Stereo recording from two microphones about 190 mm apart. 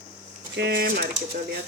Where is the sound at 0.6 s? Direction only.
55° right (ahead or behind).